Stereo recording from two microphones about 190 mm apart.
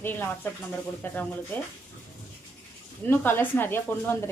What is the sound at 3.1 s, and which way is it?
Speech, 10° left (ahead or behind).